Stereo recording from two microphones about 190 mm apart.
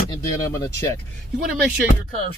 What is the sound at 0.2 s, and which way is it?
Speech, 15° left (ahead or behind).